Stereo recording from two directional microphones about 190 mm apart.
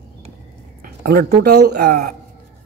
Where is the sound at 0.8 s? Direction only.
55° right (ahead or behind).